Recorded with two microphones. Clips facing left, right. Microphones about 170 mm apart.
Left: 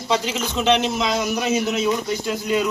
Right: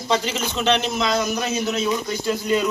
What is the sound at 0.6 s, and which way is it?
A man's voice, 15° left (ahead or behind).